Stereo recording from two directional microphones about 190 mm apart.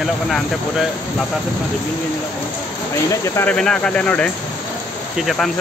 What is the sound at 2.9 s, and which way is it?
Speech, 15° left (ahead or behind).